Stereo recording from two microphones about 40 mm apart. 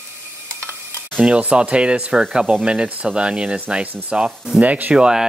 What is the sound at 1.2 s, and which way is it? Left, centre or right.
Speech, right.